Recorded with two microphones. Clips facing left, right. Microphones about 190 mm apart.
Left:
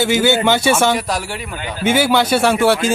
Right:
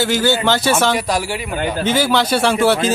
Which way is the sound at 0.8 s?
Centre (ahead or behind).